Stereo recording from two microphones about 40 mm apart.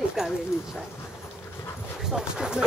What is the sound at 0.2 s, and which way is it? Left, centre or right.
Dog, centre.